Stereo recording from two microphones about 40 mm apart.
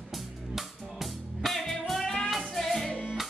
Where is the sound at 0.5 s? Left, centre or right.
Centre.